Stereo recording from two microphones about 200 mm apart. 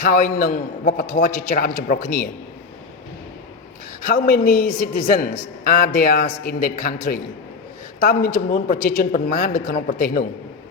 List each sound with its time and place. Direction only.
0.0 s a woman's voice: 45° left (ahead or behind)
4.0 s a woman's voice: 45° left (ahead or behind)